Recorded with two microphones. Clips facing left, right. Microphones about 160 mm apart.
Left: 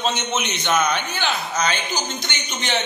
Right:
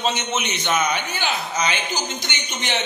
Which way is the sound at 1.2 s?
15° right (ahead or behind).